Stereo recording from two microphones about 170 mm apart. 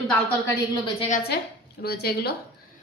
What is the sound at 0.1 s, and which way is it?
Speech, 10° left (ahead or behind).